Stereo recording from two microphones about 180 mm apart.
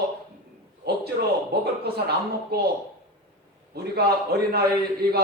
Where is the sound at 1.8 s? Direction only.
60° right (ahead or behind).